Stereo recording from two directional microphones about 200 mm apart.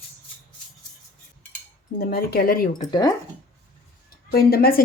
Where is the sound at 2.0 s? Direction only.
50° left (ahead or behind).